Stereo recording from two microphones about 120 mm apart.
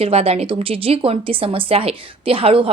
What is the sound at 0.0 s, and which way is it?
Speech, 55° right (ahead or behind).